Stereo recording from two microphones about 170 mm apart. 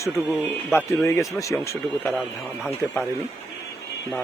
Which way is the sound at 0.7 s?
15° left (ahead or behind).